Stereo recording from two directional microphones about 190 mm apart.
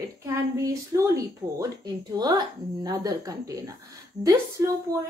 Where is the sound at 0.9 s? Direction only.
15° right (ahead or behind).